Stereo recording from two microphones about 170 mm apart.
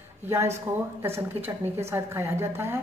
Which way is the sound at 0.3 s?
15° right (ahead or behind).